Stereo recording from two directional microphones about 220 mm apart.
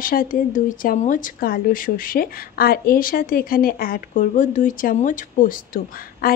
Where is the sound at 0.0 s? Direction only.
40° left (ahead or behind).